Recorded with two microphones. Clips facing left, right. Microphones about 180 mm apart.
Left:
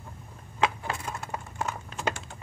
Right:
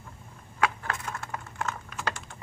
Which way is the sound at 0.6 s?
15° left (ahead or behind).